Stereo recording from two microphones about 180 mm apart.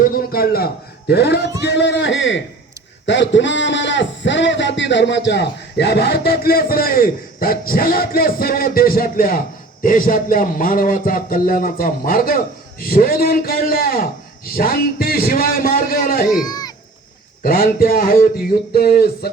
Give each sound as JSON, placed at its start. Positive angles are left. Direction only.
{"t": 0.0, "sound": "a man's voice", "side_deg": 55}
{"t": 16.4, "sound": "a sound", "side_deg": 20}
{"t": 17.4, "sound": "a man's voice", "side_deg": 55}